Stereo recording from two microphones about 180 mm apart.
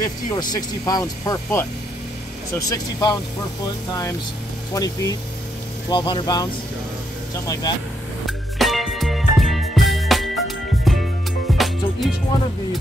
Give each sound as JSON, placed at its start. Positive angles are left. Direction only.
{"t": 0.0, "sound": "speech", "side_deg": 20}
{"t": 4.7, "sound": "speech", "side_deg": 20}
{"t": 8.3, "sound": "music", "side_deg": 0}